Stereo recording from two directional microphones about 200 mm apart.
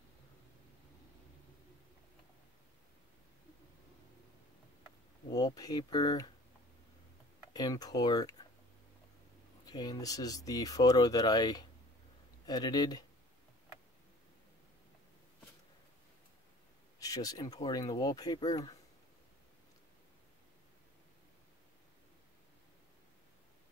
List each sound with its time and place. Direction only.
5.3 s speech: 20° left (ahead or behind)
7.5 s speech: 20° left (ahead or behind)
9.7 s speech: 20° left (ahead or behind)
17.0 s speech: 20° left (ahead or behind)